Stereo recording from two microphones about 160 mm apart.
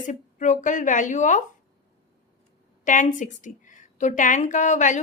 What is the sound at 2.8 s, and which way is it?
A woman's voice, 55° left (ahead or behind).